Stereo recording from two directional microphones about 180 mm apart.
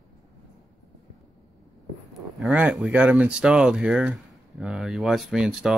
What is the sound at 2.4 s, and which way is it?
Speech, 5° right (ahead or behind).